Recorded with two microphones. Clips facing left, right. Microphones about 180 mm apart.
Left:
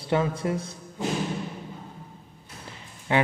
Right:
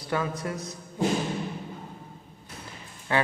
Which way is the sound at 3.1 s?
20° left (ahead or behind).